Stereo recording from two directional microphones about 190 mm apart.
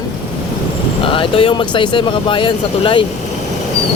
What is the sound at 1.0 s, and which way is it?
Speech, 30° left (ahead or behind).